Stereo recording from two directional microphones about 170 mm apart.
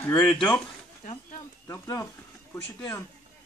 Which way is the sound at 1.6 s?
15° left (ahead or behind).